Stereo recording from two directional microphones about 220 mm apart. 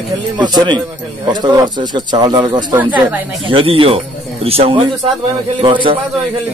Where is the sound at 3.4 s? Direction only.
25° right (ahead or behind).